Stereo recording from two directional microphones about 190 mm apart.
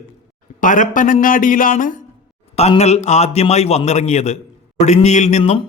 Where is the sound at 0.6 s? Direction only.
45° left (ahead or behind).